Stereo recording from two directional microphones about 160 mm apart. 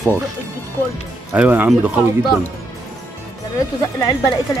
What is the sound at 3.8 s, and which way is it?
Speech, 20° left (ahead or behind).